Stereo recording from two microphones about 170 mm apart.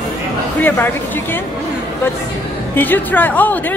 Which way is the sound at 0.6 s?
10° left (ahead or behind).